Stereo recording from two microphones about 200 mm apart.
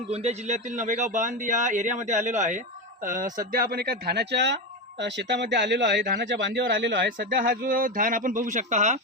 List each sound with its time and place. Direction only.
0.1 s a man's voice: 30° right (ahead or behind)